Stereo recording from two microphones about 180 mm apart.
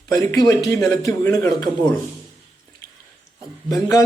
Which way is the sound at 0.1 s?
20° left (ahead or behind).